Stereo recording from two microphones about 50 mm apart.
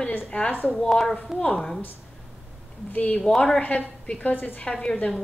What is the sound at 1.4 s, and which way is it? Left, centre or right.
Speech, centre.